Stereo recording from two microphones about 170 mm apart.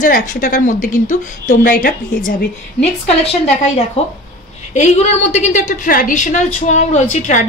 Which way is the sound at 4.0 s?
35° left (ahead or behind).